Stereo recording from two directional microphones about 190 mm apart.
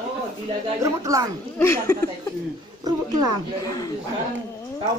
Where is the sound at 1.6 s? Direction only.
15° left (ahead or behind).